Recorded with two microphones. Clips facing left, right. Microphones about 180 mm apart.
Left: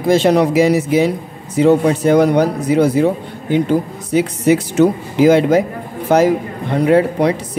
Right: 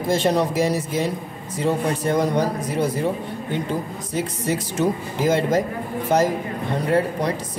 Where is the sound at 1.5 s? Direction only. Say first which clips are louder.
Left 10 dB; 75° left (ahead or behind).